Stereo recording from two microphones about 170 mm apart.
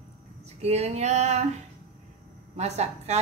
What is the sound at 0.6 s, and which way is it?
Speech, 40° right (ahead or behind).